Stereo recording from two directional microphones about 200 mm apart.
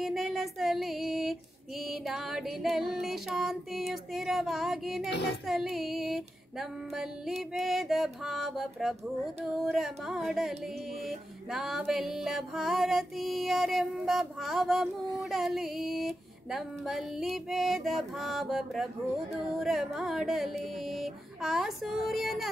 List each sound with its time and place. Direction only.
0.0 s music: centre (ahead or behind)
5.1 s speech: 60° left (ahead or behind)
5.5 s music: centre (ahead or behind)